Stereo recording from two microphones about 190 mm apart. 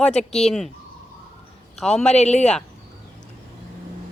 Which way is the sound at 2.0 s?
35° left (ahead or behind).